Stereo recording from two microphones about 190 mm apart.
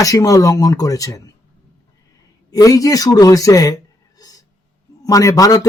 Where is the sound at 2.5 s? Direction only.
20° left (ahead or behind).